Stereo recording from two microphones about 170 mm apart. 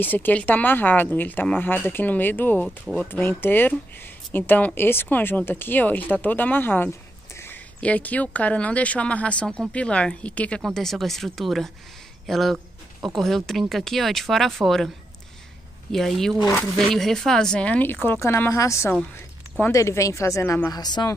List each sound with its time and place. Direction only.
0.0 s speech: 10° left (ahead or behind)
15.9 s speech: centre (ahead or behind)
20.7 s a woman's voice: 25° left (ahead or behind)